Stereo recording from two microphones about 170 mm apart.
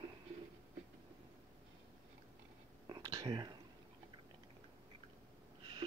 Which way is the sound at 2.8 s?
25° right (ahead or behind).